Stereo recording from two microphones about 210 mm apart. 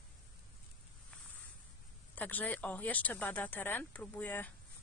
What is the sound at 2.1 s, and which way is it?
Speech, 10° left (ahead or behind).